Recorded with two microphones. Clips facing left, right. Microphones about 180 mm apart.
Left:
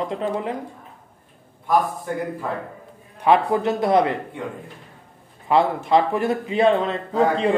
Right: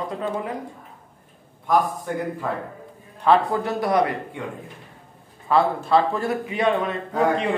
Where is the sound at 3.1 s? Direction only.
15° left (ahead or behind).